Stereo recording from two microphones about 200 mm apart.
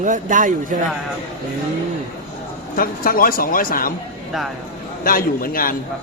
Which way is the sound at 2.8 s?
45° left (ahead or behind).